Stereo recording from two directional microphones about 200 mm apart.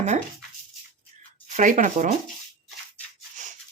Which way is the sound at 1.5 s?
40° right (ahead or behind).